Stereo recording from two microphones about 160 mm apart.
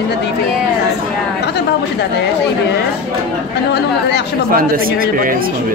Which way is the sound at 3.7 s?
90° left.